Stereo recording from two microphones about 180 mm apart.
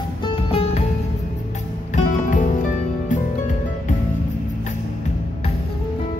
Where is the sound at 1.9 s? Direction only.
45° left (ahead or behind).